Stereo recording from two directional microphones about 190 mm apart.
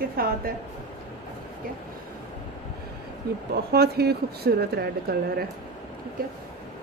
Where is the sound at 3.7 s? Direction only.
55° right (ahead or behind).